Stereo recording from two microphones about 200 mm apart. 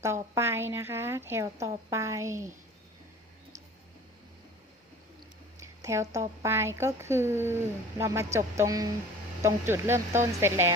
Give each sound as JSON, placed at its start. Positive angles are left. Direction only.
{"t": 0.0, "sound": "a woman's voice", "side_deg": -15}
{"t": 5.5, "sound": "a sound", "side_deg": -15}
{"t": 6.4, "sound": "a woman's voice", "side_deg": -15}